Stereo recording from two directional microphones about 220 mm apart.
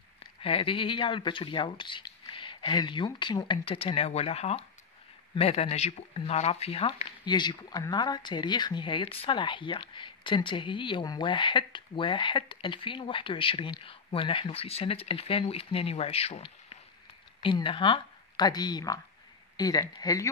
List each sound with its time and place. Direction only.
0.4 s speech: 25° left (ahead or behind)